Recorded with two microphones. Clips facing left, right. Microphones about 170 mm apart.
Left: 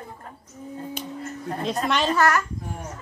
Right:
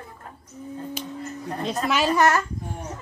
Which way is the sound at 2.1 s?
20° right (ahead or behind).